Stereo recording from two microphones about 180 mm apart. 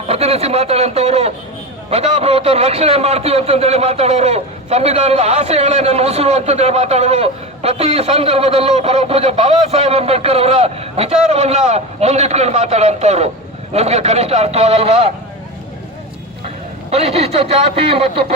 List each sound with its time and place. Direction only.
0.1 s a man's voice: 35° right (ahead or behind)
16.9 s a man's voice: 35° right (ahead or behind)